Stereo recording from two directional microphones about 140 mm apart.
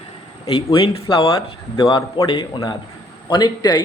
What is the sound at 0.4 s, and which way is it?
A man's voice, 40° left (ahead or behind).